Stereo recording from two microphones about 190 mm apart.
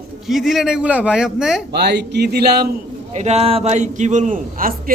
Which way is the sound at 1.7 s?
60° right (ahead or behind).